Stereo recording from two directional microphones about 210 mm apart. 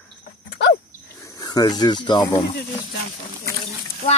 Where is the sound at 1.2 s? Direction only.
20° left (ahead or behind).